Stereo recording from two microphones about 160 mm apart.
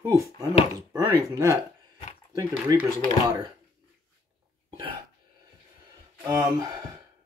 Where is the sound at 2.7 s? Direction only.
25° right (ahead or behind).